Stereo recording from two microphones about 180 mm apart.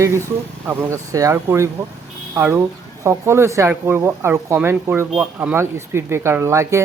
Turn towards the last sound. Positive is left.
turn(degrees=-15)  # may be behind; listen again after turning